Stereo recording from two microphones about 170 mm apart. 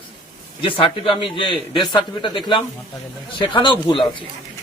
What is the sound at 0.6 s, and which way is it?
A man's voice, 30° left (ahead or behind).